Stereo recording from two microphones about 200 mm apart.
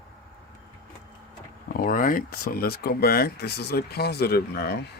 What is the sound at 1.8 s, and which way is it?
Speech, 45° left (ahead or behind).